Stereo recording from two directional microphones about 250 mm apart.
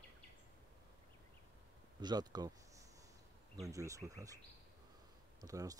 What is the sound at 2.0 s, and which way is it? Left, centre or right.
Speech, centre.